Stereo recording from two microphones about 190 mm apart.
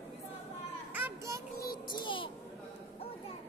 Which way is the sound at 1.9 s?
25° left (ahead or behind).